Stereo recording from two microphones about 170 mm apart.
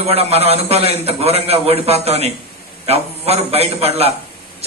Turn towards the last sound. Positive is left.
turn(degrees=-35)  # may be behind; listen again after turning